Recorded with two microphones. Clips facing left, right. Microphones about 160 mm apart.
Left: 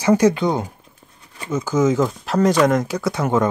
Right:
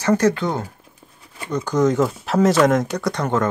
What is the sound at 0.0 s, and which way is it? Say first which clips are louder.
Speech: left 2 dB; 10° left (ahead or behind).